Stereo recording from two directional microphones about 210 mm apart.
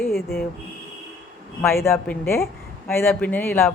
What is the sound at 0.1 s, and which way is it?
Speech, 45° left (ahead or behind).